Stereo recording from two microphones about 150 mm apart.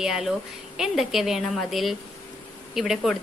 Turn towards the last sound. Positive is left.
turn(degrees=0)  # may be behind; listen again after turning